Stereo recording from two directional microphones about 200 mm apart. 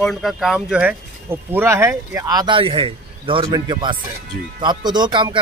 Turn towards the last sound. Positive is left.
turn(degrees=-20)  # may be behind; listen again after turning